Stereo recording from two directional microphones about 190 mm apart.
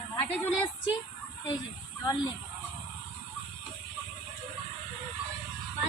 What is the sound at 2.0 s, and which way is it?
Speech, 20° left (ahead or behind).